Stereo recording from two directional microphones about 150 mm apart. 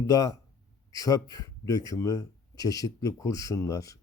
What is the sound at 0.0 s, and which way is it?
Speech, 25° left (ahead or behind).